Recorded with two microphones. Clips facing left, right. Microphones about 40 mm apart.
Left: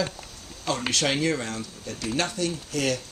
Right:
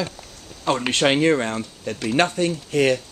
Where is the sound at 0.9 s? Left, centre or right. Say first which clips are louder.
Right 7 dB; right.